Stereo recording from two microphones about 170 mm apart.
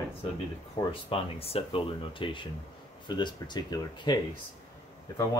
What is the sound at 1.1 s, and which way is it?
Speech, 35° left (ahead or behind).